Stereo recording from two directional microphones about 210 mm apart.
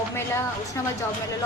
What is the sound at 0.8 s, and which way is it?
Speech, 15° left (ahead or behind).